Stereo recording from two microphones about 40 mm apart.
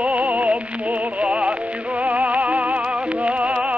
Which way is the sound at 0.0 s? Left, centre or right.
Right.